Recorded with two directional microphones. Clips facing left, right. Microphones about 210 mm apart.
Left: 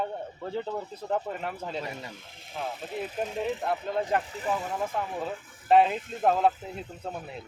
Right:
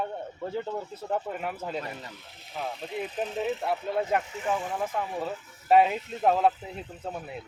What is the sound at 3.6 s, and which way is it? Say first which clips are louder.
Speech: right 1 dB; 5° right (ahead or behind).